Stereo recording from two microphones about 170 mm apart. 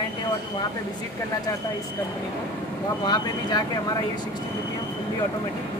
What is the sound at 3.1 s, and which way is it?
Speech, 25° left (ahead or behind).